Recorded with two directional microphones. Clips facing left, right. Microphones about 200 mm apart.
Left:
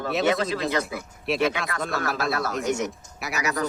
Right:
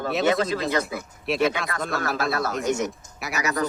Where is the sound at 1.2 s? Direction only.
Centre (ahead or behind).